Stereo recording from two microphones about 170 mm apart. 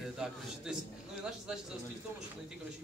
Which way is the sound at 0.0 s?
5° right (ahead or behind).